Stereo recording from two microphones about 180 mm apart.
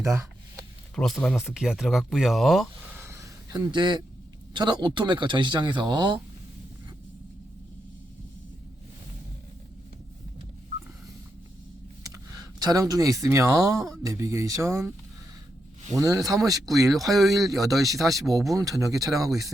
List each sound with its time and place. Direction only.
0.0 s a sound: 15° right (ahead or behind)
0.9 s speech: 5° left (ahead or behind)
3.0 s a sound: 15° right (ahead or behind)
4.5 s speech: 25° right (ahead or behind)
12.0 s speech: 20° right (ahead or behind)
16.0 s speech: 20° right (ahead or behind)
17.1 s speech: centre (ahead or behind)
17.5 s speech: 20° right (ahead or behind)